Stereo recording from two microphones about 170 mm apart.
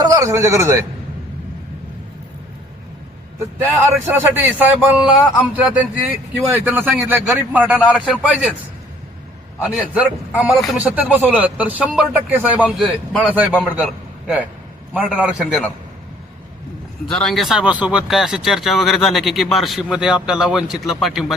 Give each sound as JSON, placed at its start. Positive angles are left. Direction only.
{"t": 0.0, "sound": "a man's voice", "side_deg": -20}
{"t": 3.6, "sound": "speech", "side_deg": -15}
{"t": 9.6, "sound": "a man's voice", "side_deg": -10}
{"t": 17.1, "sound": "speech", "side_deg": 5}